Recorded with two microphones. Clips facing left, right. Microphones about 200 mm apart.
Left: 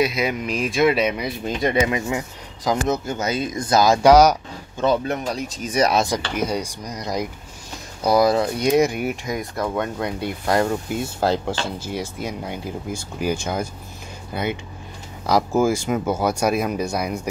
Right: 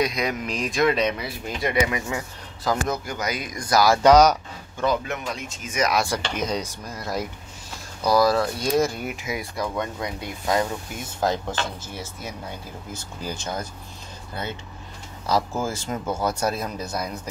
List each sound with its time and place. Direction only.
0.0 s speech: 5° left (ahead or behind)
1.4 s speech: 25° left (ahead or behind); by 4.8 s 10° left (ahead or behind)
4.8 s speech: 35° left (ahead or behind)
6.0 s speech: 10° left (ahead or behind)
9.1 s speech: 5° right (ahead or behind)
10.0 s speech: 70° left (ahead or behind)
11.1 s speech: 10° left (ahead or behind)
15.6 s speech: 10° left (ahead or behind)